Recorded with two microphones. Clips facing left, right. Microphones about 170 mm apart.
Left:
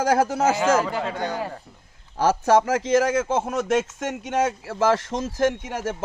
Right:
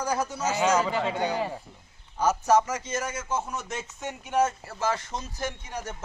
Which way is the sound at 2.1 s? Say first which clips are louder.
Left 4 dB; 90° left.